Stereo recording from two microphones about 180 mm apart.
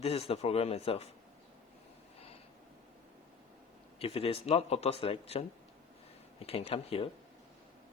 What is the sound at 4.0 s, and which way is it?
Speech, 30° left (ahead or behind).